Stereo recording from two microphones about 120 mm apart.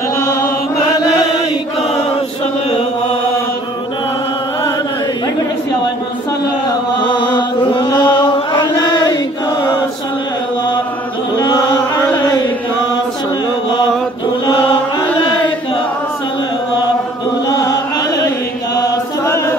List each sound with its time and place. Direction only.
7.0 s chant: 40° left (ahead or behind)
11.3 s mantra: 35° left (ahead or behind)
14.4 s chant: 40° left (ahead or behind)
17.5 s chant: 30° left (ahead or behind)
19.2 s music: 20° left (ahead or behind)